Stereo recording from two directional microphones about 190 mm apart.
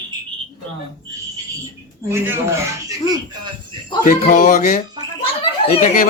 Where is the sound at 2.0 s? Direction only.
10° right (ahead or behind).